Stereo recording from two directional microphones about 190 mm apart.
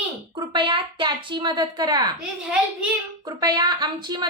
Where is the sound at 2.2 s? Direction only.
5° right (ahead or behind).